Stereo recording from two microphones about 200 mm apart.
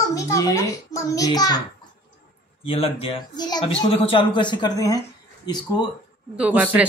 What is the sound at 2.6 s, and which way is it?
Speech, 30° left (ahead or behind).